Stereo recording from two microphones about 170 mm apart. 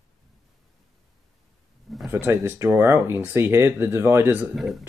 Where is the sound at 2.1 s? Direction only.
15° right (ahead or behind).